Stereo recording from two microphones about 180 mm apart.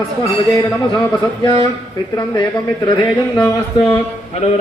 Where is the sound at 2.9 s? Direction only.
25° left (ahead or behind).